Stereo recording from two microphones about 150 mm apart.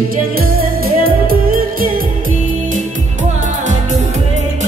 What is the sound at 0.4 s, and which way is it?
Music, 80° right.